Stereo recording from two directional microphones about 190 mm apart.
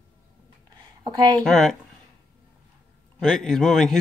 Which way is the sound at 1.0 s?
20° right (ahead or behind).